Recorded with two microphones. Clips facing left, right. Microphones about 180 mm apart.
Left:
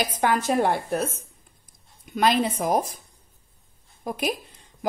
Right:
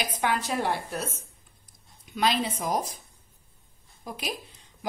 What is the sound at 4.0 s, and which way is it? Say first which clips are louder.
Speech: left 8 dB; 55° left (ahead or behind).